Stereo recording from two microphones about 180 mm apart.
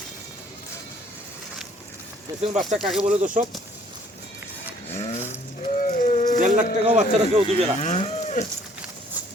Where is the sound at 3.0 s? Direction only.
40° right (ahead or behind).